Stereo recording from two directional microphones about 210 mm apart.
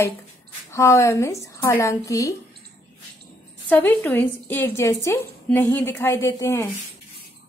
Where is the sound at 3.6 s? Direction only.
10° left (ahead or behind).